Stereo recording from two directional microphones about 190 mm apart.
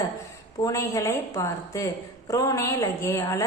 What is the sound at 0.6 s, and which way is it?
A woman's voice, 15° left (ahead or behind).